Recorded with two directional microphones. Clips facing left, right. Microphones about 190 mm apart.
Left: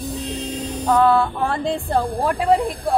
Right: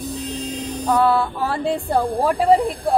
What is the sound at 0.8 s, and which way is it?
Speech, 5° right (ahead or behind).